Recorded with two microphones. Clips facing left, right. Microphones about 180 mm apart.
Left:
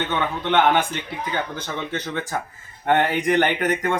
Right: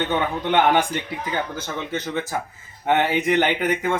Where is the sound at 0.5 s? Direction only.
15° right (ahead or behind).